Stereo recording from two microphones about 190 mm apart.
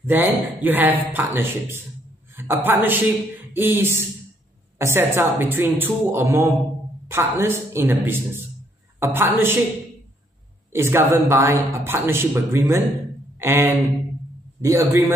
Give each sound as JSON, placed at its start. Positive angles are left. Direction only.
{"t": 0.0, "sound": "speech", "side_deg": -10}
{"t": 10.7, "sound": "speech", "side_deg": -10}